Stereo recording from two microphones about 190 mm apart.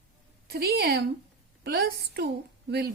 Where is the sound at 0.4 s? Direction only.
55° right (ahead or behind).